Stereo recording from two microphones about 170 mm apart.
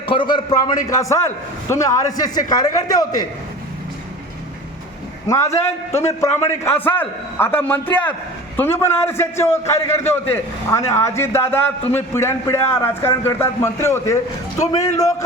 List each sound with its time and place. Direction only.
0.0 s a man's voice: 30° left (ahead or behind)
5.3 s a man's voice: 15° left (ahead or behind)